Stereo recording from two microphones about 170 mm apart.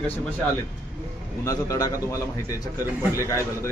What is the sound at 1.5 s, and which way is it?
Speech, 20° left (ahead or behind).